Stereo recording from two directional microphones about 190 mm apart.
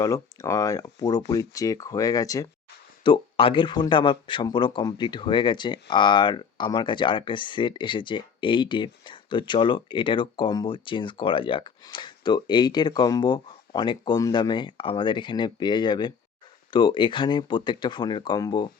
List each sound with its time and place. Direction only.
0.0 s speech: 20° left (ahead or behind)